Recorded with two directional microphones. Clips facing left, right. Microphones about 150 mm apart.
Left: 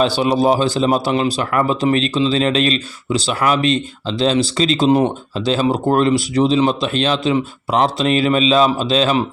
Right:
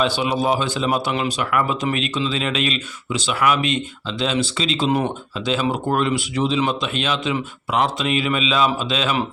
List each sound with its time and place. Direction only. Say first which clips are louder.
0.0 s speech: left 5 dB; 35° left (ahead or behind)